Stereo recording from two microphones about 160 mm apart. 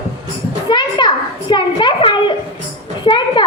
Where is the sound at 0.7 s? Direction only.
30° left (ahead or behind).